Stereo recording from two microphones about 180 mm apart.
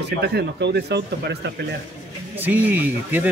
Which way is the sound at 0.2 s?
65° right (ahead or behind).